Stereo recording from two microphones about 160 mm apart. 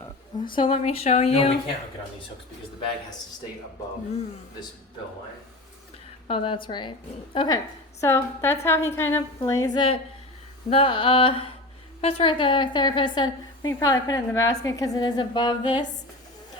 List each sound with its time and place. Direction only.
0.5 s speech: 35° left (ahead or behind)
6.2 s a woman's voice: 35° left (ahead or behind)